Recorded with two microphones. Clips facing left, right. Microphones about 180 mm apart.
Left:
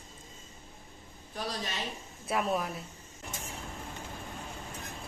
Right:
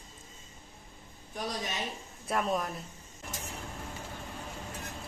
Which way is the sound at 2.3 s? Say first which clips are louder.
Even; 5° left (ahead or behind).